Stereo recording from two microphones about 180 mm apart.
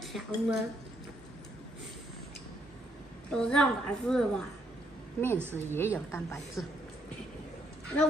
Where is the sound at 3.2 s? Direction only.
5° left (ahead or behind).